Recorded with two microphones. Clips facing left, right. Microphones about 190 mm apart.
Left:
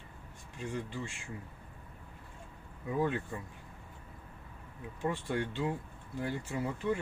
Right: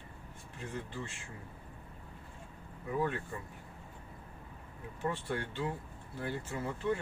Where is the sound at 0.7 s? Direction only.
10° left (ahead or behind).